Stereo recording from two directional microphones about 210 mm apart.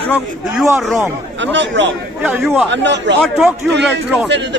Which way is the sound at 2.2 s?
10° right (ahead or behind).